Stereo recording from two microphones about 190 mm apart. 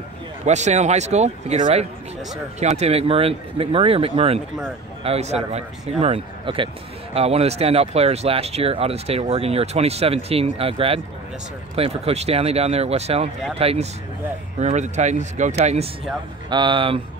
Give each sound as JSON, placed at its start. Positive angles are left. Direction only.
{"t": 0.5, "sound": "speech", "side_deg": -35}
{"t": 16.4, "sound": "speech", "side_deg": -25}